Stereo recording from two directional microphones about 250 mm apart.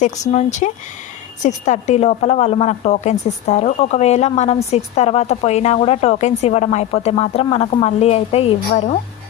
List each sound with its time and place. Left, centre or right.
0.3 s a woman's voice: left